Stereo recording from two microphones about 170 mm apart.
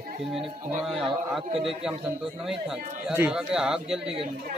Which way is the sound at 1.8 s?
5° right (ahead or behind).